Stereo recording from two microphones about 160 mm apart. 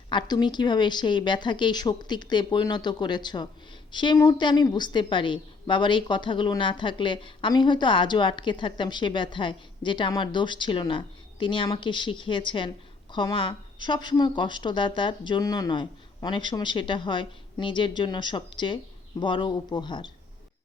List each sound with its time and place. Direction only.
0.1 s a woman's voice: 30° left (ahead or behind)